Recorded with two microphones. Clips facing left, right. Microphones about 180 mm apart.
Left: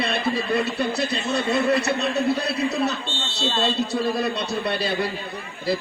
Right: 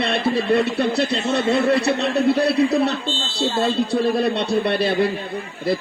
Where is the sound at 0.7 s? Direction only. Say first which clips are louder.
Right 4 dB; 65° right (ahead or behind).